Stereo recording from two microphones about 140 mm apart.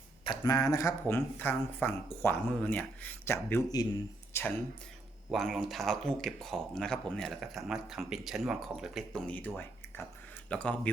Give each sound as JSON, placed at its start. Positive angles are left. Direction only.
{"t": 0.3, "sound": "speech", "side_deg": 25}
{"t": 5.3, "sound": "speech", "side_deg": 0}